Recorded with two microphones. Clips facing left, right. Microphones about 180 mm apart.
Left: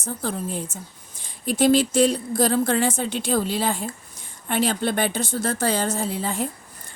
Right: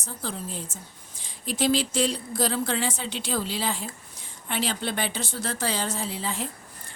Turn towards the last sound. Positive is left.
turn(degrees=50)  # may be behind; listen again after turning